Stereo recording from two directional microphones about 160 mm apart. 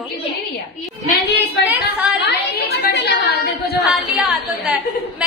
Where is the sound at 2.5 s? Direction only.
80° left.